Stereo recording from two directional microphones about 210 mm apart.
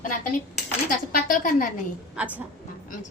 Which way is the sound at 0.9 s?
40° left (ahead or behind).